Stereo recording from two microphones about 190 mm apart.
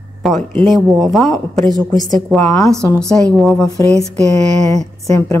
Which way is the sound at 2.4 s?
15° left (ahead or behind).